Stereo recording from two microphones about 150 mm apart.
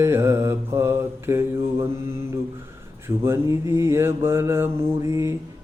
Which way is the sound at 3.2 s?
15° right (ahead or behind).